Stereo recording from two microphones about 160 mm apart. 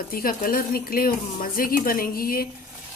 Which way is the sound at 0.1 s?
65° left (ahead or behind).